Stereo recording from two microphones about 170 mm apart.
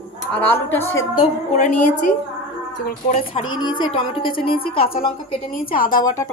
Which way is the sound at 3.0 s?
40° left (ahead or behind).